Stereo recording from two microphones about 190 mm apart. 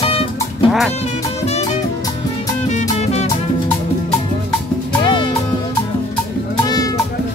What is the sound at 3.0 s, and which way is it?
Music, 35° left (ahead or behind).